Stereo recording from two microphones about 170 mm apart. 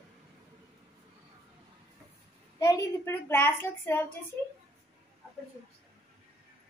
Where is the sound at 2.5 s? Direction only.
20° left (ahead or behind).